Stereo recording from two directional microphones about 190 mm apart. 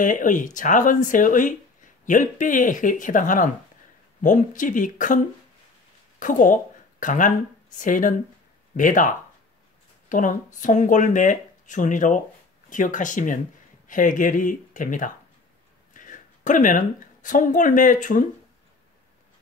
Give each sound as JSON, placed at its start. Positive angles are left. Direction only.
{"t": 0.0, "sound": "a woman's voice", "side_deg": 45}